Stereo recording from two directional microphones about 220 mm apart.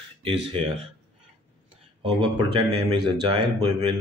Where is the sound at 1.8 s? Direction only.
20° right (ahead or behind).